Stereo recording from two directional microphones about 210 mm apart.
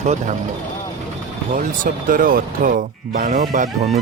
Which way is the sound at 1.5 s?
40° right (ahead or behind).